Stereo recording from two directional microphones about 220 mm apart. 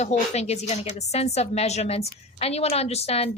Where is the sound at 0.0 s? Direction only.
30° left (ahead or behind).